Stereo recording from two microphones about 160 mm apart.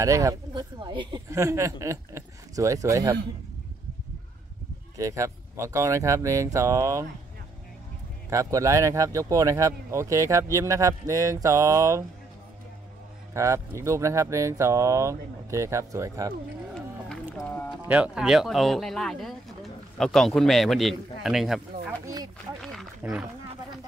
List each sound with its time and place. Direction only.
0.0 s speech: 20° right (ahead or behind)
4.9 s speech: 20° right (ahead or behind)
8.3 s speech: 20° right (ahead or behind)
13.3 s speech: 20° right (ahead or behind)
17.5 s a sound: 10° left (ahead or behind)
17.8 s speech: 5° right (ahead or behind)
22.0 s speech: 25° right (ahead or behind)
22.6 s wild animals: centre (ahead or behind)